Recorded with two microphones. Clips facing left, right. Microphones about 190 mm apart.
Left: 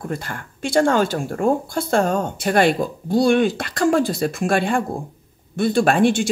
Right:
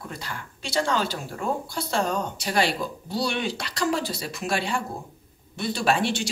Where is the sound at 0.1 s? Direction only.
50° left (ahead or behind).